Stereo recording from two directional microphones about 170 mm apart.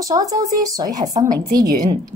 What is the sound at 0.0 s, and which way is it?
A woman's voice, 20° right (ahead or behind).